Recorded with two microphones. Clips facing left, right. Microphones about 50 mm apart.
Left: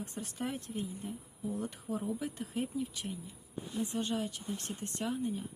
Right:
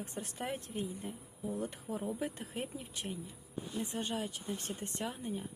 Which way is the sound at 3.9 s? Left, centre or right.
Centre.